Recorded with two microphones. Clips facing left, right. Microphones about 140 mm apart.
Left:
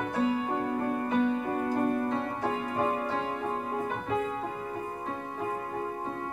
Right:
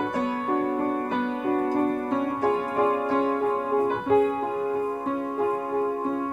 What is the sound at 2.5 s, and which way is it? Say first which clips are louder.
Music: right 6 dB; 45° right (ahead or behind).